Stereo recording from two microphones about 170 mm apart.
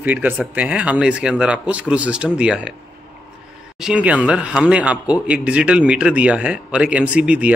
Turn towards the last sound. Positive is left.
turn(degrees=-10)  # may be behind; listen again after turning